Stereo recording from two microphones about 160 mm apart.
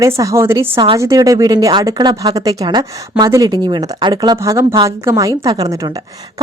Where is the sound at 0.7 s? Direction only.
35° right (ahead or behind).